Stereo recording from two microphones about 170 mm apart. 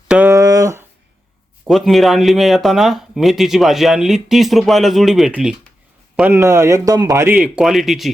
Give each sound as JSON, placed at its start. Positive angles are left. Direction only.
{"t": 0.1, "sound": "a sound", "side_deg": -10}
{"t": 1.6, "sound": "a man's voice", "side_deg": 0}
{"t": 7.3, "sound": "speech", "side_deg": -5}